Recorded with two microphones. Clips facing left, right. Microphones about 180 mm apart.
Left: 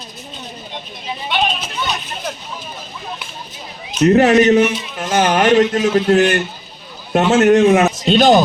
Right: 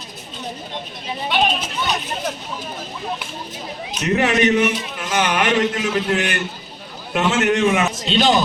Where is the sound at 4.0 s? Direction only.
40° left (ahead or behind).